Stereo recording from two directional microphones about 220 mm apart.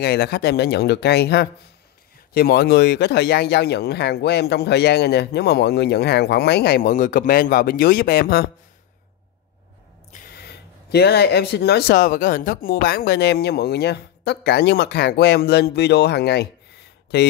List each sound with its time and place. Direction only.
0.0 s speech: 45° left (ahead or behind)
10.3 s speech: 45° left (ahead or behind)